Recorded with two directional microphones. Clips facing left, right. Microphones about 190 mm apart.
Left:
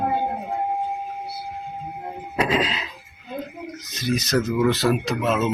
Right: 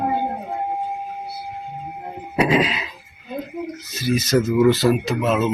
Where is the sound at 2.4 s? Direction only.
10° right (ahead or behind).